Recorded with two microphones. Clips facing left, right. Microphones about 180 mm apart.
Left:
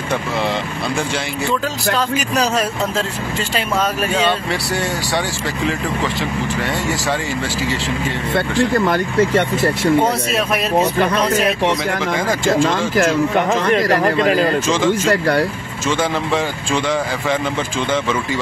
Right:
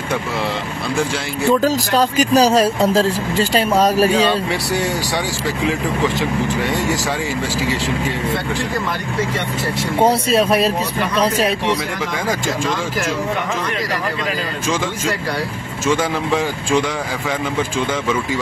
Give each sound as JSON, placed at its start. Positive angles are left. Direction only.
{"t": 1.5, "sound": "speech", "side_deg": -40}
{"t": 10.0, "sound": "speech", "side_deg": -30}
{"t": 13.8, "sound": "speech", "side_deg": 50}
{"t": 15.9, "sound": "speech", "side_deg": -10}